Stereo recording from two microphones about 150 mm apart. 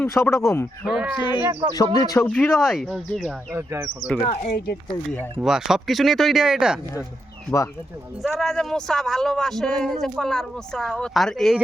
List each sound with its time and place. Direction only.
0.0 s speech: 20° left (ahead or behind)
0.9 s speech: 10° right (ahead or behind)
1.7 s speech: 25° left (ahead or behind)
2.1 s speech: 10° left (ahead or behind)
2.6 s speech: centre (ahead or behind)
3.5 s speech: 20° right (ahead or behind)
4.4 s speech: 90° left
5.4 s speech: 5° right (ahead or behind)
7.5 s speech: 15° left (ahead or behind)
8.2 s speech: centre (ahead or behind)